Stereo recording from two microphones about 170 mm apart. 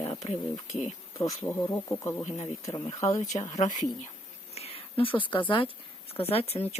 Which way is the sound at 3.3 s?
45° left (ahead or behind).